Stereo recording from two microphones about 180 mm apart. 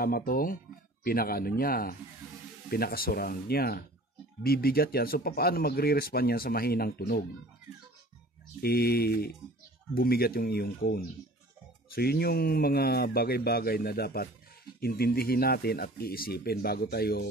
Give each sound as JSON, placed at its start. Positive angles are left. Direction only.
{"t": 0.0, "sound": "speech", "side_deg": 55}
{"t": 8.6, "sound": "speech", "side_deg": 60}